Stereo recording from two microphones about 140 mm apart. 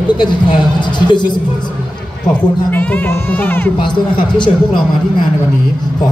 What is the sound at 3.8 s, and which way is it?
A man's voice, 35° left (ahead or behind).